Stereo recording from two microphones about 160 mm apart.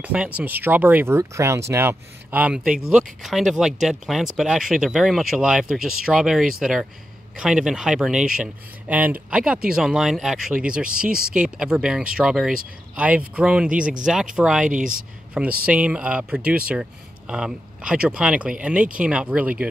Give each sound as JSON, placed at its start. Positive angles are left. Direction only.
{"t": 0.0, "sound": "speech", "side_deg": -10}
{"t": 14.7, "sound": "speech", "side_deg": -55}
{"t": 15.6, "sound": "speech", "side_deg": -10}